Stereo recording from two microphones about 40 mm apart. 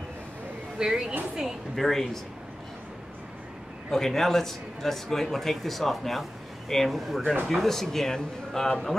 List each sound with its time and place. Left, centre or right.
0.7 s a woman's voice: centre
1.8 s speech: centre
3.9 s speech: centre